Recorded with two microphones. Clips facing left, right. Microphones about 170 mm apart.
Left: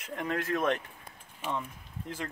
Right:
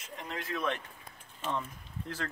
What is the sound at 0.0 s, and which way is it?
Speech, 60° left (ahead or behind).